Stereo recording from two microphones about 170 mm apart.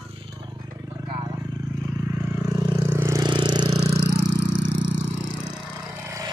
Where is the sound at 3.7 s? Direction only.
40° right (ahead or behind).